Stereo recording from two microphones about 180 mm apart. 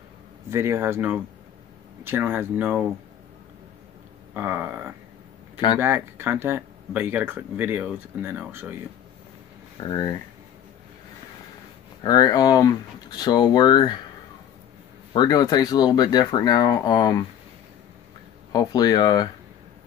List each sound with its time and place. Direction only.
0.5 s speech: 15° right (ahead or behind)
4.3 s speech: 10° right (ahead or behind)
9.8 s speech: 25° left (ahead or behind)
12.0 s speech: 20° left (ahead or behind)
15.1 s speech: 20° left (ahead or behind)
18.5 s speech: 20° left (ahead or behind)